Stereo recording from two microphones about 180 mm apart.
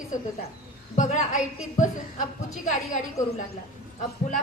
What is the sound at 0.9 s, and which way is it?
A woman's voice, 45° left (ahead or behind).